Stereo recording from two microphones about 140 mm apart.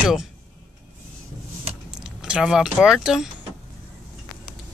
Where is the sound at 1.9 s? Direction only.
5° right (ahead or behind).